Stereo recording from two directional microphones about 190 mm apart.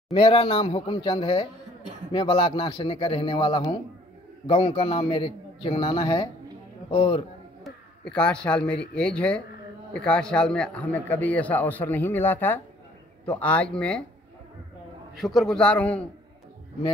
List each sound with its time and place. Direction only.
0.1 s a man's voice: 30° left (ahead or behind)
7.6 s a man's voice: 5° left (ahead or behind)
15.1 s a man's voice: centre (ahead or behind)